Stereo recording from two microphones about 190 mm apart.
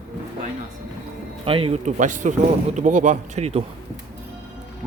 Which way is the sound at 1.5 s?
30° right (ahead or behind).